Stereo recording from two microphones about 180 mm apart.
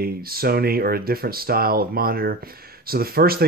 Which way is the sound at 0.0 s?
55° right (ahead or behind).